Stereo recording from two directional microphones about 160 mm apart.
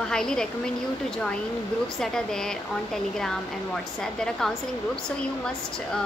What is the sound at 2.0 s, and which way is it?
Speech, 5° left (ahead or behind).